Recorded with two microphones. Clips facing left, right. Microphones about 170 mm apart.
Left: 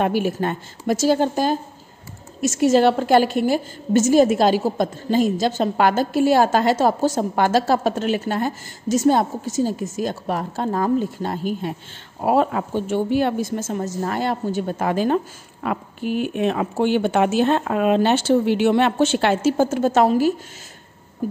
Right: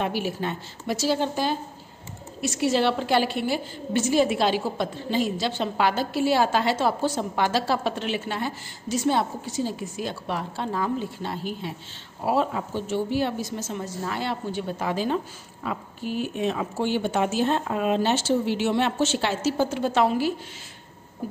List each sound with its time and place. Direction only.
0.0 s a woman's voice: 50° left (ahead or behind)
15.6 s speech: 60° left (ahead or behind); by 20.3 s 45° left (ahead or behind)